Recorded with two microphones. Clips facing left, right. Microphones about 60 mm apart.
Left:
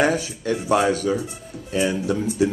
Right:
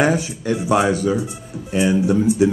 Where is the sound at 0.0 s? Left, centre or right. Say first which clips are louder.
Right 2 dB; right.